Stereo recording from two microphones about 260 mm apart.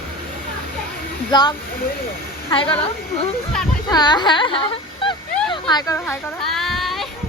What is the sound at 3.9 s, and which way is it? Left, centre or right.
Whimper, centre.